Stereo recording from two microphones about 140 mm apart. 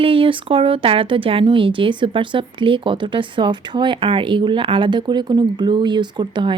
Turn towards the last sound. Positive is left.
turn(degrees=-35)  # may be behind; listen again after turning